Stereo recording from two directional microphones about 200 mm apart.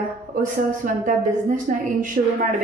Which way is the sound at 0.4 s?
40° right (ahead or behind).